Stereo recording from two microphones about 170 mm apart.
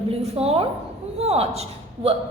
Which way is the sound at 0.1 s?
35° right (ahead or behind).